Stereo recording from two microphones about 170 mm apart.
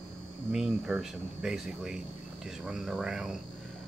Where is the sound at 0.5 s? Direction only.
Centre (ahead or behind).